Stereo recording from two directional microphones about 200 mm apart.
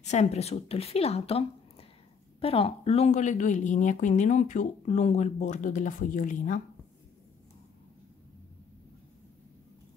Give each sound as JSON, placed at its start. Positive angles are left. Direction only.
{"t": 0.0, "sound": "speech", "side_deg": 35}